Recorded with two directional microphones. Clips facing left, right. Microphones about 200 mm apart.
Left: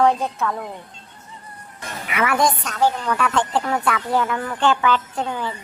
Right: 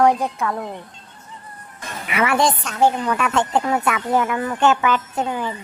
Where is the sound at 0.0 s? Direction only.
15° right (ahead or behind).